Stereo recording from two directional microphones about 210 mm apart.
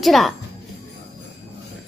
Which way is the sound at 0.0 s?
Centre (ahead or behind).